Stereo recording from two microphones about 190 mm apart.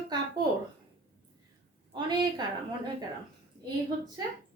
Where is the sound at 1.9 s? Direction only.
25° right (ahead or behind).